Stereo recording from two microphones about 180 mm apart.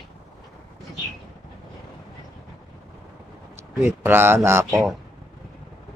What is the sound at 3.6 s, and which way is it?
A man's voice, 15° right (ahead or behind).